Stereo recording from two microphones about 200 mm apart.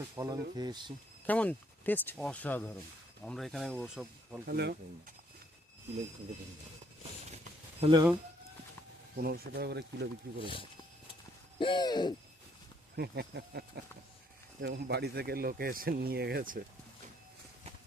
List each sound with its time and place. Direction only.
0.2 s speech: 20° right (ahead or behind)
1.3 s speech: 10° left (ahead or behind)
4.4 s speech: 50° right (ahead or behind)
7.8 s speech: 25° right (ahead or behind)
9.1 s speech: 50° right (ahead or behind)
10.4 s hoot: 25° left (ahead or behind)
13.0 s speech: 55° right (ahead or behind)